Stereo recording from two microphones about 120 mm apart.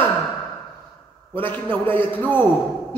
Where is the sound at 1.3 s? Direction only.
15° left (ahead or behind).